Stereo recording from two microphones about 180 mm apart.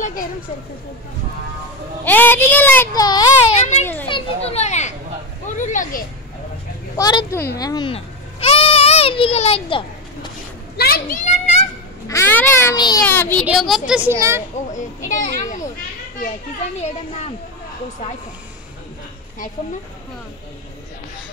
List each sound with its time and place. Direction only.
2.0 s a child's voice: 10° left (ahead or behind)
3.5 s children playing: 40° left (ahead or behind)
3.8 s children playing: 10° left (ahead or behind)
4.1 s children playing: 35° left (ahead or behind)
5.6 s a child's voice: 45° left (ahead or behind)
7.0 s speech: 20° left (ahead or behind)
7.9 s a sound: 35° left (ahead or behind)
10.8 s a child's voice: 55° left (ahead or behind)
12.1 s a child's voice: 10° left (ahead or behind)
13.0 s a child's voice: 10° left (ahead or behind)
13.5 s a woman's voice: centre (ahead or behind)
14.1 s speech: 15° right (ahead or behind)
15.0 s a child's voice: 45° left (ahead or behind)